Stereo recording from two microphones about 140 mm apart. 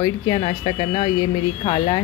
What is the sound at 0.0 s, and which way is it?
Speech, 35° left (ahead or behind).